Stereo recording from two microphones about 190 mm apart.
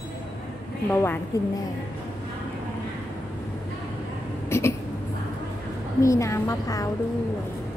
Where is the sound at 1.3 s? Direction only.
20° left (ahead or behind).